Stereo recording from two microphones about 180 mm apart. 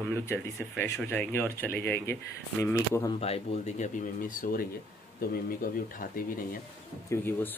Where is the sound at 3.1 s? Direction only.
35° left (ahead or behind).